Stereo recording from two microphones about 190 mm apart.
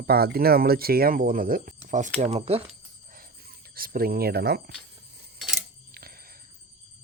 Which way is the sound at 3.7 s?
50° right (ahead or behind).